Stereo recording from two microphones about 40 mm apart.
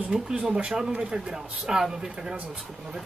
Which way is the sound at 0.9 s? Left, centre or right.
Right.